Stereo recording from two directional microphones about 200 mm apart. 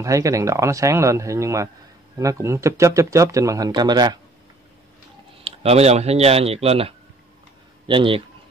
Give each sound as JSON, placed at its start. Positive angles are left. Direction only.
{"t": 0.0, "sound": "speech", "side_deg": -15}
{"t": 5.4, "sound": "speech", "side_deg": -30}